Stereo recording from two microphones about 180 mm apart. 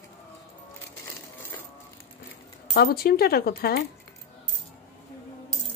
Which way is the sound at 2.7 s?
55° left (ahead or behind).